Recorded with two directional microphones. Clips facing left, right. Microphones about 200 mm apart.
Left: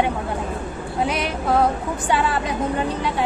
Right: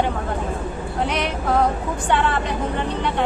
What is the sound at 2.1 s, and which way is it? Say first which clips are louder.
Speech: right 1 dB; 5° left (ahead or behind).